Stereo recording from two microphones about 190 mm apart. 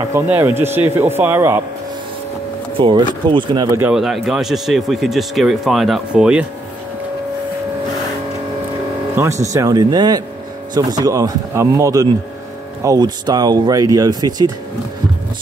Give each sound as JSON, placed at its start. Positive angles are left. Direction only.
{"t": 0.1, "sound": "speech", "side_deg": -10}
{"t": 2.8, "sound": "speech", "side_deg": -25}
{"t": 3.8, "sound": "speech", "side_deg": 0}
{"t": 9.2, "sound": "speech", "side_deg": -10}